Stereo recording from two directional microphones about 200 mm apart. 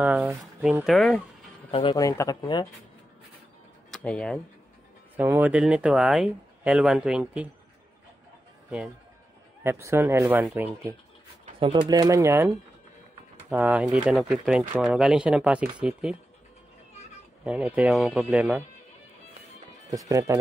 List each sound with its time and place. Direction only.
0.0 s speech: 10° right (ahead or behind)
1.7 s speech: 25° left (ahead or behind)
3.9 s speech: 5° left (ahead or behind)
5.1 s speech: 10° right (ahead or behind)
8.6 s speech: 5° right (ahead or behind)
17.5 s speech: 5° right (ahead or behind)
19.9 s speech: 15° right (ahead or behind)